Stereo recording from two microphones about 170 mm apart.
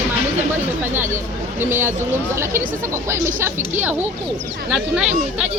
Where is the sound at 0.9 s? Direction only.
15° right (ahead or behind).